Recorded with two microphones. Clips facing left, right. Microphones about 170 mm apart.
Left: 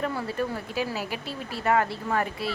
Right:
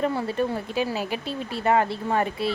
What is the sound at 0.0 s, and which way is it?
Speech, 25° right (ahead or behind).